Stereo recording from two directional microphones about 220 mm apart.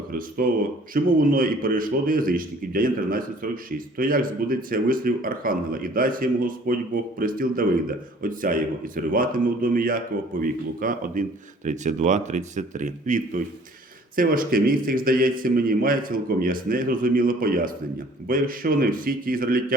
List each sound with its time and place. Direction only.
0.1 s speech: 40° right (ahead or behind)